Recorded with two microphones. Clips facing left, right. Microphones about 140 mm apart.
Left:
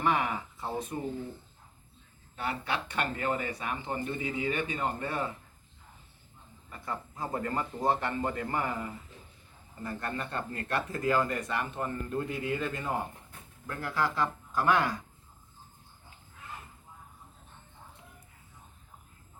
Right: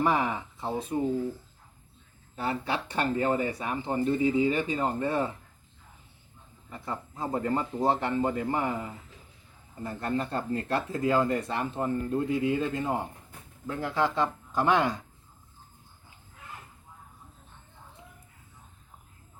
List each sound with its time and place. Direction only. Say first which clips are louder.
0.0 s speech: right 3 dB; 30° right (ahead or behind)
2.3 s speech: right 3 dB; 30° right (ahead or behind)
6.7 s speech: right 2 dB; 20° right (ahead or behind)